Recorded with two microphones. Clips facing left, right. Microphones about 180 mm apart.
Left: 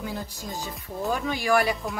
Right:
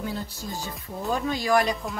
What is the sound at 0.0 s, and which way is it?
A woman's voice, 15° left (ahead or behind).